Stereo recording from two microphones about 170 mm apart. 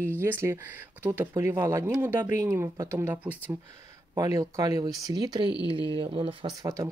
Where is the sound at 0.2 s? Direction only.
15° right (ahead or behind).